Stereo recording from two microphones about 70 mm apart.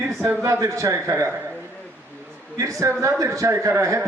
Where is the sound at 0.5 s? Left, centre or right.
Right.